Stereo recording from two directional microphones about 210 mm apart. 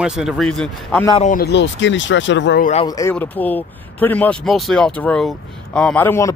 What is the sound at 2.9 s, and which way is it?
Speech, 15° left (ahead or behind).